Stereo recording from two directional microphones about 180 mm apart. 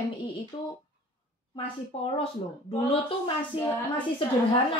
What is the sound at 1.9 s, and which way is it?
Speech, 35° left (ahead or behind).